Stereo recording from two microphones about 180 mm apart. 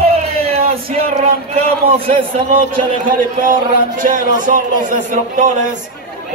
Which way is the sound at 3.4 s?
50° right (ahead or behind).